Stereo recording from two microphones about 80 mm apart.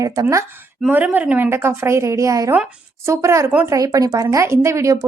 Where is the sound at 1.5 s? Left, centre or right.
Right.